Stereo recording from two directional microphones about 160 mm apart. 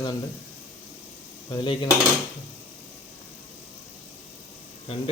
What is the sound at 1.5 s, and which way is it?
Speech, 30° left (ahead or behind).